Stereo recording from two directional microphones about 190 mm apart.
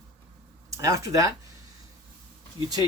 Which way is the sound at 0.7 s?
15° right (ahead or behind).